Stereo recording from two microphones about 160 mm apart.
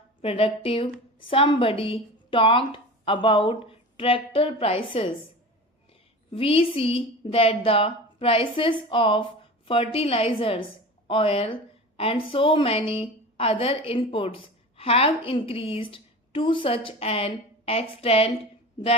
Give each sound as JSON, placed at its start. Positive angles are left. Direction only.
{"t": 0.2, "sound": "a woman's voice", "side_deg": 35}
{"t": 6.3, "sound": "a woman's voice", "side_deg": 35}